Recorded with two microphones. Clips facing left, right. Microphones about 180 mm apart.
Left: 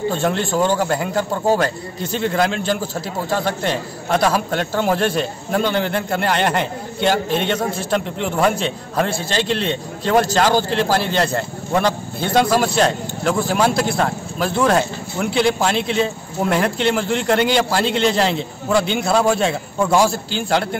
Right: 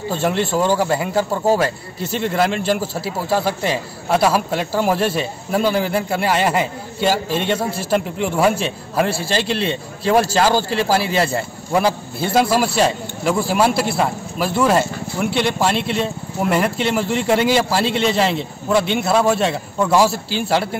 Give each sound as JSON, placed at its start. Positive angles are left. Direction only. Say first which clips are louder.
{"t": 0.1, "sound": "a man's voice", "louder": "right 1 dB", "side_deg": -5}